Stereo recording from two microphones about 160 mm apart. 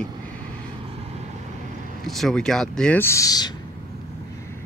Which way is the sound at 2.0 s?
Centre (ahead or behind).